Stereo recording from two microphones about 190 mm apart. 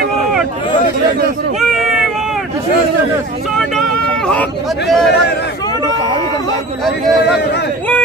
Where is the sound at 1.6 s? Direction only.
Centre (ahead or behind).